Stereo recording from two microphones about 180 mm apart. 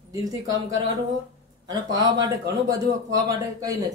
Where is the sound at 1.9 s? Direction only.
20° right (ahead or behind).